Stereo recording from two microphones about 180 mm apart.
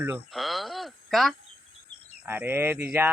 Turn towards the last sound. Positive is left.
turn(degrees=-10)  # may be behind; listen again after turning